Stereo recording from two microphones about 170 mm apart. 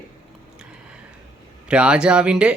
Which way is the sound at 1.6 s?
5° right (ahead or behind).